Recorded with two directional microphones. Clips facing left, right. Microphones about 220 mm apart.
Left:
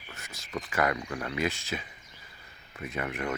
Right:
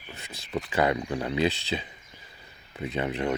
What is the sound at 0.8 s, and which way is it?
Speech, 25° right (ahead or behind).